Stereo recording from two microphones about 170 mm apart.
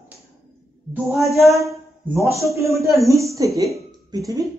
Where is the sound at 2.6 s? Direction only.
20° right (ahead or behind).